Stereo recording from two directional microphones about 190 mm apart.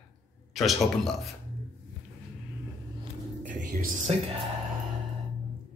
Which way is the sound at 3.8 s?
40° right (ahead or behind).